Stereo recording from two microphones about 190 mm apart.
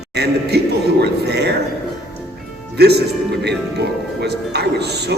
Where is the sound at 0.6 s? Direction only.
60° right (ahead or behind).